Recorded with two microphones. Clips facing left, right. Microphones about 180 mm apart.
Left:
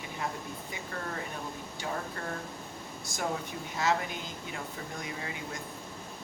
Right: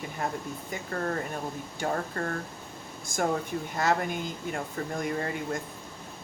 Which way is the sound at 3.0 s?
50° right (ahead or behind).